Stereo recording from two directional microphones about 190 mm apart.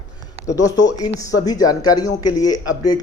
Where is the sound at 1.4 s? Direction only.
20° left (ahead or behind).